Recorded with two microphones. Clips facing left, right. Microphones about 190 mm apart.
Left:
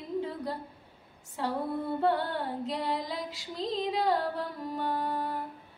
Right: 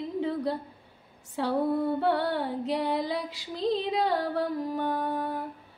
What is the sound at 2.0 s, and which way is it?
Female singing, 70° right (ahead or behind).